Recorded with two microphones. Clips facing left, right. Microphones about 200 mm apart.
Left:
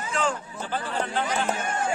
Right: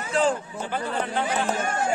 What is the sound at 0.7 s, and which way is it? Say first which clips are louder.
Speech: right 1 dB; 10° right (ahead or behind).